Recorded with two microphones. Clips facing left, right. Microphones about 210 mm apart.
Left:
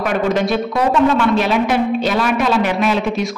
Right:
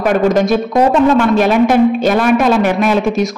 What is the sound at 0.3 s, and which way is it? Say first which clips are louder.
A woman's voice: right 4 dB; 45° right (ahead or behind).